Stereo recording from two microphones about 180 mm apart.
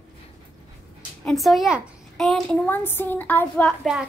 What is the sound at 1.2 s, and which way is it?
A child's voice, centre (ahead or behind).